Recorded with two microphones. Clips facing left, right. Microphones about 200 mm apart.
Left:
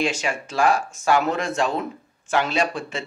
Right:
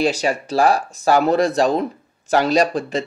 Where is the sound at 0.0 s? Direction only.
35° right (ahead or behind).